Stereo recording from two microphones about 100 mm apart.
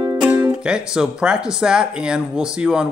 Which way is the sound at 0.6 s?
10° right (ahead or behind).